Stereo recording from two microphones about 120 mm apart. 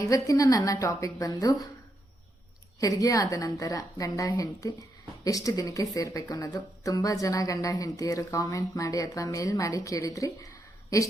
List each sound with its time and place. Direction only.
0.0 s a woman's voice: 30° left (ahead or behind)
2.8 s a woman's voice: 30° left (ahead or behind)